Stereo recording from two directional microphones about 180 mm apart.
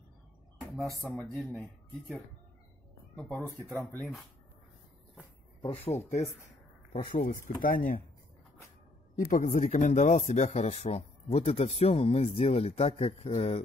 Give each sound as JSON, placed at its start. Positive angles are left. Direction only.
{"t": 0.7, "sound": "speech", "side_deg": 0}
{"t": 5.6, "sound": "speech", "side_deg": 35}
{"t": 9.1, "sound": "speech", "side_deg": 45}